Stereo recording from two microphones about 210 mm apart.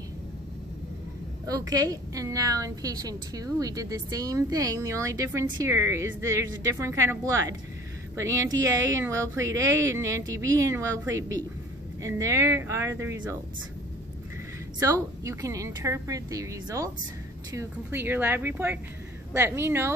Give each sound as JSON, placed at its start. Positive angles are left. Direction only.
{"t": 1.5, "sound": "a woman's voice", "side_deg": -15}
{"t": 14.8, "sound": "a woman's voice", "side_deg": -15}